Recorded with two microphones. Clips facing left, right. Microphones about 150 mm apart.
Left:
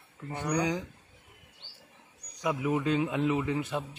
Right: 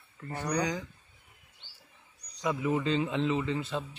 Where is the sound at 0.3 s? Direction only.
15° left (ahead or behind).